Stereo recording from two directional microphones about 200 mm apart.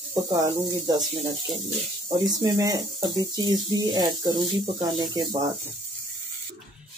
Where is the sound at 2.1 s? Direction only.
20° right (ahead or behind).